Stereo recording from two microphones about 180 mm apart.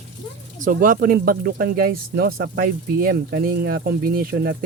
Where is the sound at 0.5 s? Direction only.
45° right (ahead or behind).